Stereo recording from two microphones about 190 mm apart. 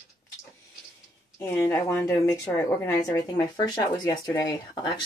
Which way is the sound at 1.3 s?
10° left (ahead or behind).